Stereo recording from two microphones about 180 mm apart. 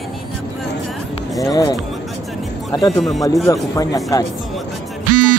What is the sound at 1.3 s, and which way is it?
Speech, 20° left (ahead or behind).